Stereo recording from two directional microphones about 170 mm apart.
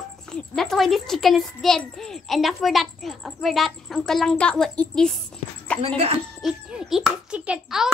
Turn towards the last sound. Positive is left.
turn(degrees=-5)  # may be behind; listen again after turning